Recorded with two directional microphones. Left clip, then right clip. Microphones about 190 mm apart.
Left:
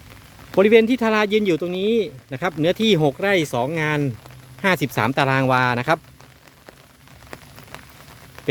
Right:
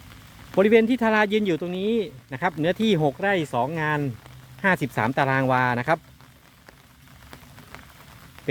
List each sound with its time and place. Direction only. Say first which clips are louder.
0.5 s speech: left 4 dB; 10° left (ahead or behind)